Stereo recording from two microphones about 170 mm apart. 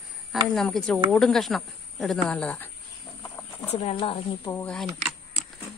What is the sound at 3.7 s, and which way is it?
Speech, 35° left (ahead or behind).